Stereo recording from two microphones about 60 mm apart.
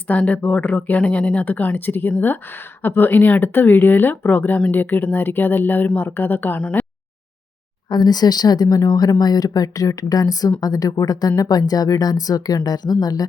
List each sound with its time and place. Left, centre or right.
0.1 s speech: left
7.9 s speech: left